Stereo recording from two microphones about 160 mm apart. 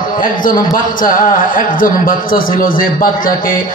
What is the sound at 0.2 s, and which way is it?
A man's voice, 55° left (ahead or behind).